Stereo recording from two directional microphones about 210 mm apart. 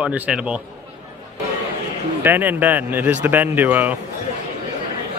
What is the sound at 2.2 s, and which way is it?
Speech, 10° right (ahead or behind).